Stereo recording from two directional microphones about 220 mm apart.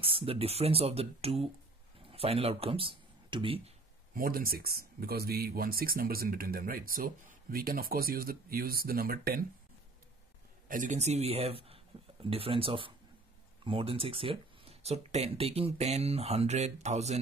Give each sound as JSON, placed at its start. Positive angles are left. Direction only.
{"t": 0.0, "sound": "speech", "side_deg": -25}
{"t": 4.1, "sound": "speech", "side_deg": -40}
{"t": 10.7, "sound": "speech", "side_deg": -35}